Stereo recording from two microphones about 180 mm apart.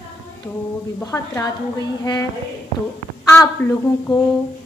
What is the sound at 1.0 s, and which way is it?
Speech, 15° left (ahead or behind).